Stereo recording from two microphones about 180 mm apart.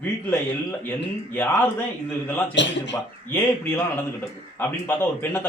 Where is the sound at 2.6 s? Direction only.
80° left.